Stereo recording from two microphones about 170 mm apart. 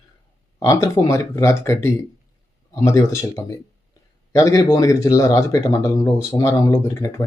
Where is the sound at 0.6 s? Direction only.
20° left (ahead or behind).